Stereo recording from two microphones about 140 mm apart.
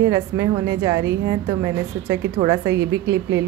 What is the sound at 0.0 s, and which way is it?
A woman's voice, 25° right (ahead or behind).